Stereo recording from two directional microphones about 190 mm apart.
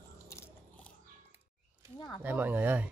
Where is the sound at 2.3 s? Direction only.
10° right (ahead or behind).